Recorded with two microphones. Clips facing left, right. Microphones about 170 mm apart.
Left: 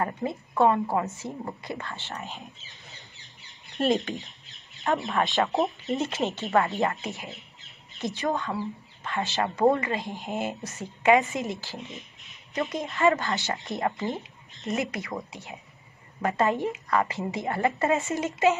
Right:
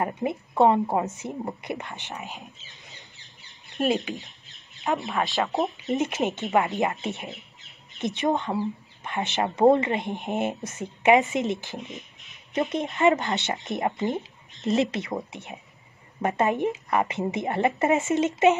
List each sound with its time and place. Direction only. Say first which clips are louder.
0.0 s speech: right 2 dB; 20° right (ahead or behind)
4.9 s speech: left 1 dB; centre (ahead or behind)
5.9 s speech: right 2 dB; 20° right (ahead or behind)
8.0 s speech: right 3 dB; 20° right (ahead or behind)